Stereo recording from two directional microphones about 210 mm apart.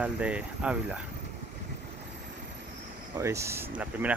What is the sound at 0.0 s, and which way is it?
Speech, 5° right (ahead or behind).